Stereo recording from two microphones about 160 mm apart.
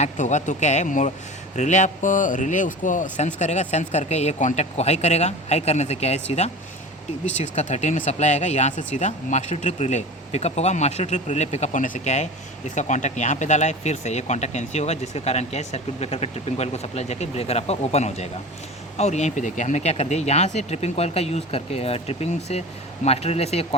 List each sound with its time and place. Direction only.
0.0 s speech: 50° left (ahead or behind)